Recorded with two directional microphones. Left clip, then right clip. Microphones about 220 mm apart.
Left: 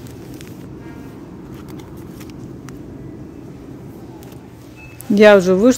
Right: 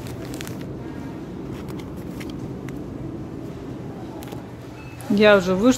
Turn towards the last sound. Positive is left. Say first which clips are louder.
# left 6 dB
turn(degrees=25)  # may be behind; listen again after turning